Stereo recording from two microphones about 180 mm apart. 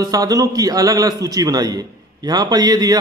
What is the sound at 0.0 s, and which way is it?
A man's voice, 20° right (ahead or behind).